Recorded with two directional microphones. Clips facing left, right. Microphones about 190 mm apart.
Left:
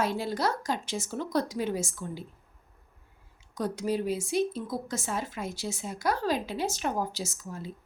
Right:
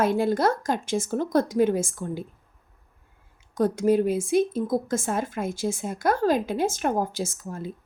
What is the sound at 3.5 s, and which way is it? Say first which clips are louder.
Speech: right 9 dB; 50° right (ahead or behind).